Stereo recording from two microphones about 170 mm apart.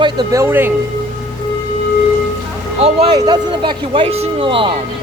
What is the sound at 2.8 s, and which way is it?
Speech, 30° right (ahead or behind).